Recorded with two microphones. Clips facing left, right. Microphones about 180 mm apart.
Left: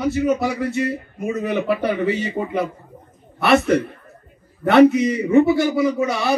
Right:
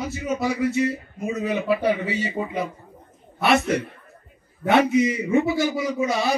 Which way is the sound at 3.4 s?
60° left (ahead or behind).